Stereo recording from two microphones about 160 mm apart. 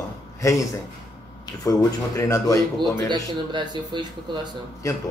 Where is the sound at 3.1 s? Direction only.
30° right (ahead or behind).